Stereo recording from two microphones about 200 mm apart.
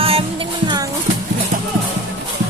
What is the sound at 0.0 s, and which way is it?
Music, 25° right (ahead or behind).